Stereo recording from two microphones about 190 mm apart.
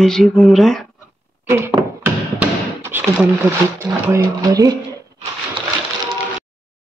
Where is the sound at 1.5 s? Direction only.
15° right (ahead or behind).